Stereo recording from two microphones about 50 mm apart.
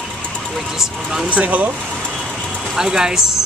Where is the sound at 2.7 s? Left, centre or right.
Centre.